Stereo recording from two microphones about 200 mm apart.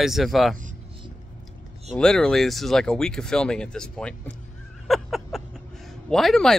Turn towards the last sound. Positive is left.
turn(degrees=0)  # may be behind; listen again after turning